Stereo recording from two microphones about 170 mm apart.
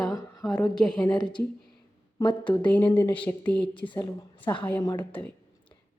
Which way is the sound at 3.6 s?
30° left (ahead or behind).